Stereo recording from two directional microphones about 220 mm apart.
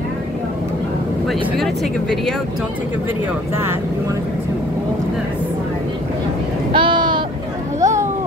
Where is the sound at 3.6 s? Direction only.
10° right (ahead or behind).